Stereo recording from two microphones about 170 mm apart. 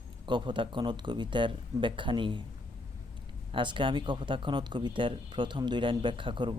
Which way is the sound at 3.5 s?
30° right (ahead or behind).